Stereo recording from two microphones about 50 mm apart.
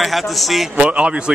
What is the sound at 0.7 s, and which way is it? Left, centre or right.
Speech, right.